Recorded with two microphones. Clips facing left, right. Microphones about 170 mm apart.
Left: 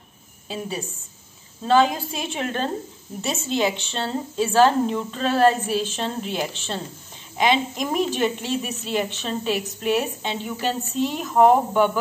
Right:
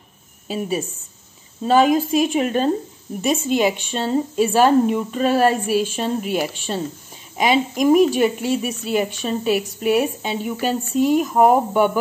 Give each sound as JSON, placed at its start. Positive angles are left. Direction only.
{"t": 0.5, "sound": "a woman's voice", "side_deg": -20}